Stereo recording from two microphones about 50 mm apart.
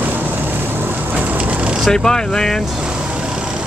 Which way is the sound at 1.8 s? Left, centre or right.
Centre.